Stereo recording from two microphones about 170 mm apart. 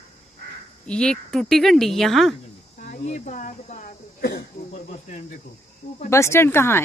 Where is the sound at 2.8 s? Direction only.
45° left (ahead or behind).